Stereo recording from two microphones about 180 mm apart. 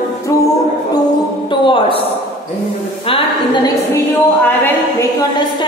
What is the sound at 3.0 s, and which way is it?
Speech, 30° left (ahead or behind).